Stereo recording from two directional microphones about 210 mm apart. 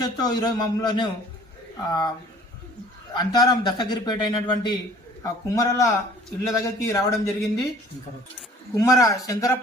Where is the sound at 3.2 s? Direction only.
20° left (ahead or behind).